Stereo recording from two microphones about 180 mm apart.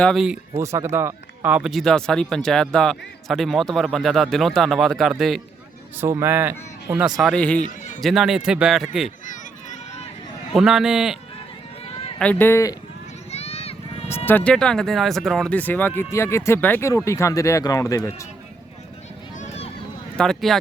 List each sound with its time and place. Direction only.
0.0 s speech: centre (ahead or behind)
0.6 s speech: 15° right (ahead or behind)
6.0 s speech: 15° right (ahead or behind)
7.2 s speech: 5° left (ahead or behind)
9.2 s a sound: 45° left (ahead or behind)
10.5 s speech: centre (ahead or behind)
12.2 s speech: 10° left (ahead or behind)
13.3 s vehicle: 35° left (ahead or behind)
14.3 s speech: 10° left (ahead or behind)
19.4 s vehicle: 35° left (ahead or behind)
20.1 s speech: 5° left (ahead or behind)